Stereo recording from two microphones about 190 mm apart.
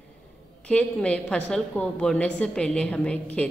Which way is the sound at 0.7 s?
5° left (ahead or behind).